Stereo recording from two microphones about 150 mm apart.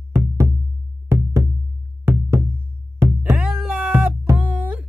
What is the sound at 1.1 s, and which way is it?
Music, 15° right (ahead or behind).